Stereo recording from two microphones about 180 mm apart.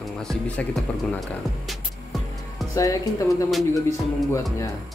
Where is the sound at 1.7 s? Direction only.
Centre (ahead or behind).